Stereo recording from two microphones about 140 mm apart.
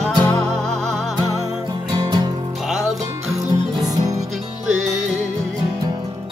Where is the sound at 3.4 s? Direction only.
25° right (ahead or behind).